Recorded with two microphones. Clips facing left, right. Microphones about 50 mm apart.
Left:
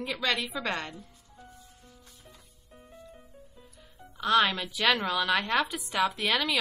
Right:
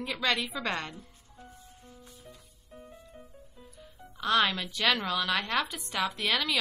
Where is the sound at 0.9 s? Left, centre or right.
Right.